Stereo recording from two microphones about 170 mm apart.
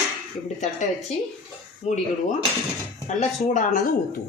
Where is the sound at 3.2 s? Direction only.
45° left (ahead or behind).